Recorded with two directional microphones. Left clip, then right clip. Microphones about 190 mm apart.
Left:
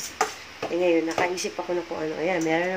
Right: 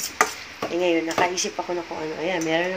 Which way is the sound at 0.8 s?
15° left (ahead or behind).